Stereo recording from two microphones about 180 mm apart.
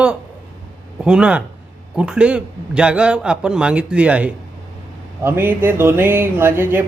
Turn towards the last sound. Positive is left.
turn(degrees=-10)  # may be behind; listen again after turning